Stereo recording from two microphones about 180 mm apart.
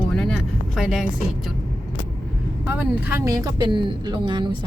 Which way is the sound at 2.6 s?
10° right (ahead or behind).